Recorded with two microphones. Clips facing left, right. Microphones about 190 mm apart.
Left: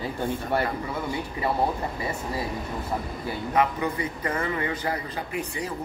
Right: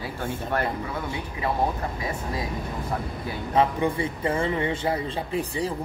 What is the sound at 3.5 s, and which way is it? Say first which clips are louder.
A man's voice: right 3 dB; 30° right (ahead or behind).